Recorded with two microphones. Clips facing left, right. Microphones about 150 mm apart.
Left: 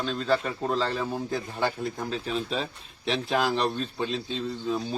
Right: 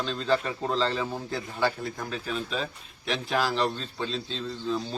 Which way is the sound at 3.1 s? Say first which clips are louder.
Left 2 dB; 20° left (ahead or behind).